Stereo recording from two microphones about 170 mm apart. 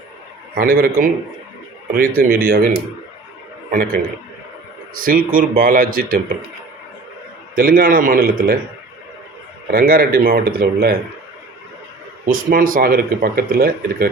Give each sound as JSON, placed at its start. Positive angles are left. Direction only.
{"t": 0.5, "sound": "speech", "side_deg": -60}
{"t": 3.7, "sound": "speech", "side_deg": -60}
{"t": 5.0, "sound": "speech", "side_deg": -55}
{"t": 7.5, "sound": "speech", "side_deg": -55}
{"t": 9.7, "sound": "speech", "side_deg": -60}
{"t": 12.2, "sound": "speech", "side_deg": -55}